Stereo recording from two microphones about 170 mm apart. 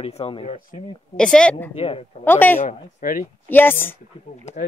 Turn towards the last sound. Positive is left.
turn(degrees=10)  # may be behind; listen again after turning